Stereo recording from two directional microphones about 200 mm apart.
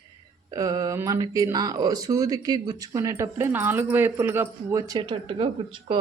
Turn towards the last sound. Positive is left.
turn(degrees=-25)  # may be behind; listen again after turning